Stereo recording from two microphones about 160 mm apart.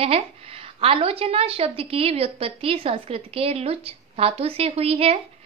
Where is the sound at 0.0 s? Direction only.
40° right (ahead or behind).